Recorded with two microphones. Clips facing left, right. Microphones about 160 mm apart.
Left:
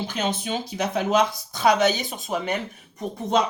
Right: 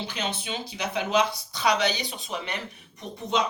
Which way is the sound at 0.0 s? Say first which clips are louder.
Left 5 dB; 45° left (ahead or behind).